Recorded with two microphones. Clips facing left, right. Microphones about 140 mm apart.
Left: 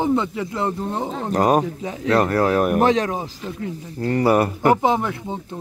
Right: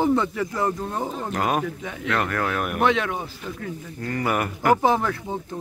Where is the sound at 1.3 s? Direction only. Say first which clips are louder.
Left 8 dB; 35° left (ahead or behind).